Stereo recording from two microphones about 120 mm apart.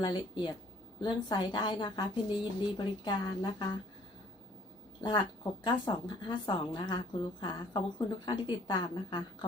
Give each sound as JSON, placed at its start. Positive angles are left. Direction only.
{"t": 0.0, "sound": "a woman's voice", "side_deg": 40}
{"t": 4.9, "sound": "a woman's voice", "side_deg": 40}